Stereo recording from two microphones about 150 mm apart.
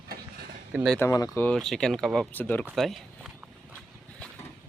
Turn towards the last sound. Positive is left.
turn(degrees=0)  # may be behind; listen again after turning